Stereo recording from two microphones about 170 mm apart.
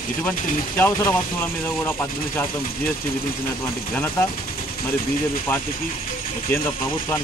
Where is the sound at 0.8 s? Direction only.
10° left (ahead or behind).